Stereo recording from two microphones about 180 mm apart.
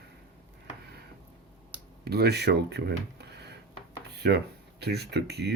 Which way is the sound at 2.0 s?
65° right (ahead or behind).